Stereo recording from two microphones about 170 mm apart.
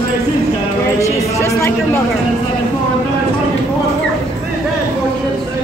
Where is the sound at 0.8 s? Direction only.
20° left (ahead or behind).